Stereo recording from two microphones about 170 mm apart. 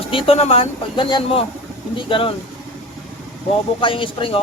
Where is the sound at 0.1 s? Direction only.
35° left (ahead or behind).